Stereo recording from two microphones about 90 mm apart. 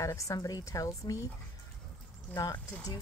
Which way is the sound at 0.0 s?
35° left (ahead or behind).